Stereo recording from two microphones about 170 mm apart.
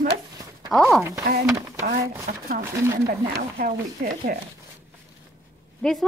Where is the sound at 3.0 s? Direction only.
60° right (ahead or behind).